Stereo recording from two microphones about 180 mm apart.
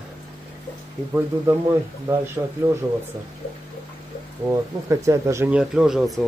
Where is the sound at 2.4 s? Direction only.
15° right (ahead or behind).